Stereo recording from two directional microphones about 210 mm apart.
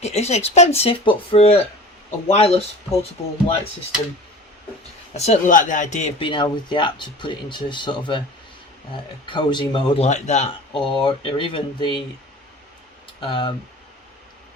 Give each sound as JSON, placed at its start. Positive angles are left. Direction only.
{"t": 0.0, "sound": "speech", "side_deg": 30}
{"t": 5.1, "sound": "speech", "side_deg": 30}
{"t": 9.2, "sound": "speech", "side_deg": 25}
{"t": 13.1, "sound": "speech", "side_deg": 25}